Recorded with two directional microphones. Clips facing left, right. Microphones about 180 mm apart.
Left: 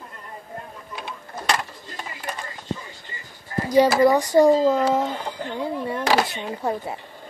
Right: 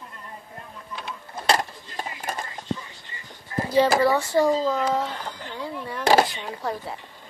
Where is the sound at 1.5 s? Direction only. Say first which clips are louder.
Right 3 dB; 40° right (ahead or behind).